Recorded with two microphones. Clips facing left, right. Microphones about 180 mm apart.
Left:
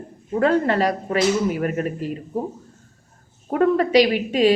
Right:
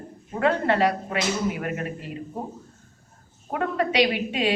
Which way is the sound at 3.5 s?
40° left (ahead or behind).